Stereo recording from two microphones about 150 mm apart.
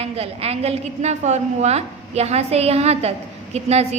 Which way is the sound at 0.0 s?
45° right (ahead or behind).